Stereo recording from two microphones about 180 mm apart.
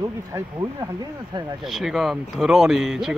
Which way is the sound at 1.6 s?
Centre (ahead or behind).